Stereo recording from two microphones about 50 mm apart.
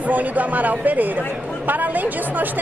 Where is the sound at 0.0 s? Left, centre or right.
Right.